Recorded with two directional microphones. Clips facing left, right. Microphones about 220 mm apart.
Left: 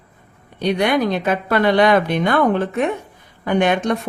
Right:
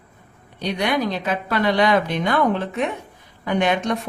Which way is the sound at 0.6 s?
55° left (ahead or behind).